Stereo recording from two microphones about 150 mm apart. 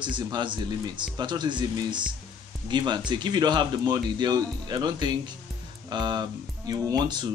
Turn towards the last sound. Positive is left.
turn(degrees=-30)  # may be behind; listen again after turning